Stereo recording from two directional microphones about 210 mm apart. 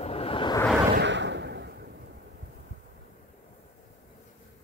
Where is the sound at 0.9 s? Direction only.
60° right (ahead or behind).